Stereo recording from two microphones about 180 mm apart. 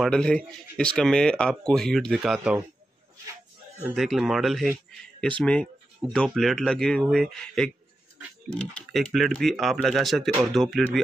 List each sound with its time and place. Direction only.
0.0 s speech: 5° left (ahead or behind)
3.9 s speech: centre (ahead or behind)